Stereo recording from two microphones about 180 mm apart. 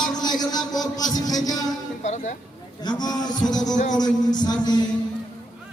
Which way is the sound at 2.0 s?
40° left (ahead or behind).